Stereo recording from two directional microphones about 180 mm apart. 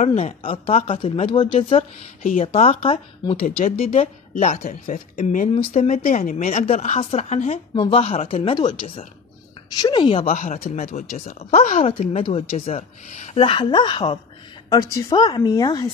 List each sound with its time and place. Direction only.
0.0 s a woman's voice: 35° left (ahead or behind)
5.5 s a woman's voice: 35° left (ahead or behind)
7.7 s a woman's voice: 25° left (ahead or behind)